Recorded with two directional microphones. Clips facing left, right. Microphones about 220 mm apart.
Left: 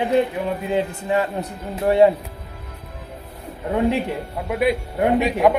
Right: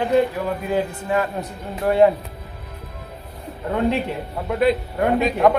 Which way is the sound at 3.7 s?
15° left (ahead or behind).